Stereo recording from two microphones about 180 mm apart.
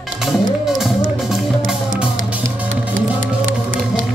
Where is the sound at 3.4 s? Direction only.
90° right.